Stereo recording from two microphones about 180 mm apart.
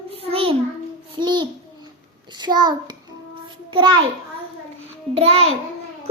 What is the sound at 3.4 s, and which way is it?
Child singing, 25° right (ahead or behind).